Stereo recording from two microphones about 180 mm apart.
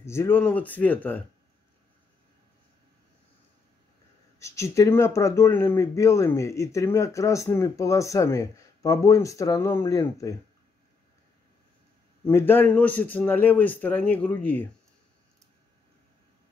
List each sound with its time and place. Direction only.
0.0 s speech: 15° left (ahead or behind)
4.4 s speech: 15° left (ahead or behind)
12.3 s speech: 15° left (ahead or behind)